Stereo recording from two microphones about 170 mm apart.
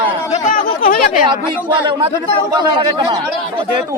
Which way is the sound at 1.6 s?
25° right (ahead or behind).